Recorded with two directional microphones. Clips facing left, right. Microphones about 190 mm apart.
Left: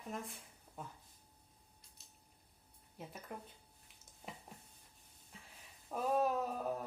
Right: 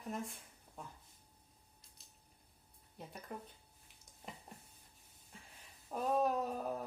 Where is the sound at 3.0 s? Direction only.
5° left (ahead or behind).